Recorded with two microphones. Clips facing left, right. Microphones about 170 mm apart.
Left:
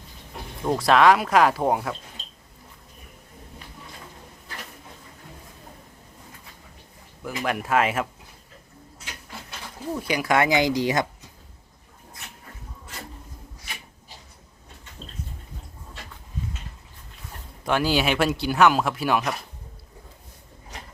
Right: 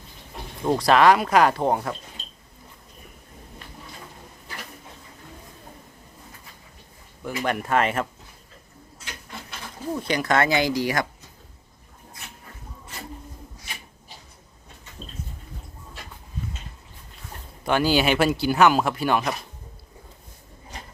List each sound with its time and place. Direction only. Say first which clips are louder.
0.6 s speech: right 1 dB; centre (ahead or behind)
7.2 s speech: right 1 dB; centre (ahead or behind)
10.0 s speech: even; 10° left (ahead or behind)
17.7 s speech: right 2 dB; centre (ahead or behind)